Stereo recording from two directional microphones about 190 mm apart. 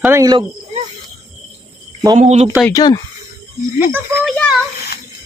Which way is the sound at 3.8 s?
10° right (ahead or behind).